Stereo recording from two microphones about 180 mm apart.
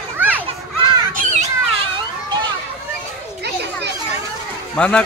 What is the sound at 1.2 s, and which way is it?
Children playing, 40° right (ahead or behind).